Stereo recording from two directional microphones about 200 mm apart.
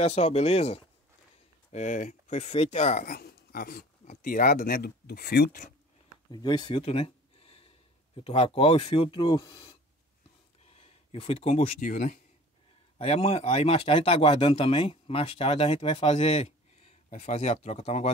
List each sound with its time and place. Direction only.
0.0 s speech: 30° left (ahead or behind); by 5.6 s 50° left (ahead or behind)
6.3 s speech: 20° left (ahead or behind)